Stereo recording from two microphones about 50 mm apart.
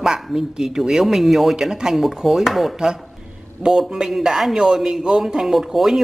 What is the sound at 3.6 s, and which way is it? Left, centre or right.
A man's voice, centre.